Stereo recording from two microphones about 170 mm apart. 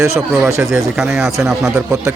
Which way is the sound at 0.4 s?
15° right (ahead or behind).